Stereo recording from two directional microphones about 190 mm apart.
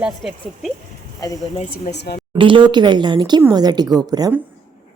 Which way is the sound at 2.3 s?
25° right (ahead or behind).